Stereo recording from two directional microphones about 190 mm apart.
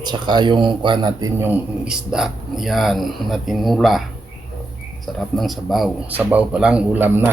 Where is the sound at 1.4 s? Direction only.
10° right (ahead or behind).